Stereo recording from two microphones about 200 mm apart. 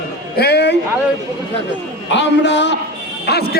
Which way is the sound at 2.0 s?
65° left (ahead or behind).